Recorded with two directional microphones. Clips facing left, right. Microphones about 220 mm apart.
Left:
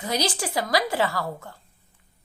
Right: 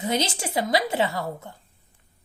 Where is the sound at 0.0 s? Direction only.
25° right (ahead or behind).